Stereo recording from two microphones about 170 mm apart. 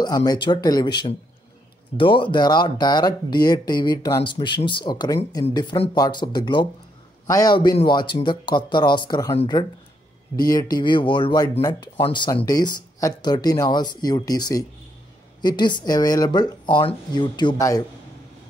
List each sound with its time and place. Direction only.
0.0 s speech: 20° left (ahead or behind)